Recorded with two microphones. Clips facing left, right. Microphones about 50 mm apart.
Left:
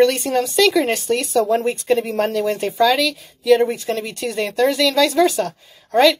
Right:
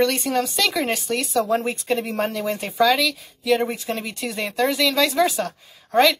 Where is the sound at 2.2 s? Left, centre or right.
Centre.